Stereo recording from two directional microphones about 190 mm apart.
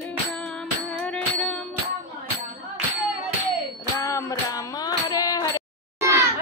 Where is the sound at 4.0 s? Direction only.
15° left (ahead or behind).